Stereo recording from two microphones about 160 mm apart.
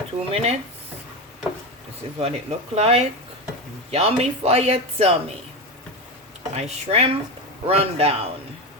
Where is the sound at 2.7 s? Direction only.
40° right (ahead or behind).